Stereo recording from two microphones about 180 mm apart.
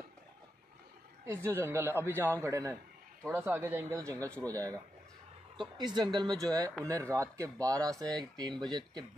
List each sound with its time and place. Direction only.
1.2 s a man's voice: 15° right (ahead or behind)